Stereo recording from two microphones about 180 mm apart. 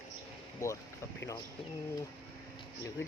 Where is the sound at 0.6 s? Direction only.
20° left (ahead or behind).